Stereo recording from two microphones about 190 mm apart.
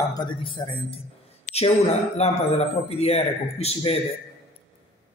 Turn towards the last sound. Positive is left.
turn(degrees=30)  # may be behind; listen again after turning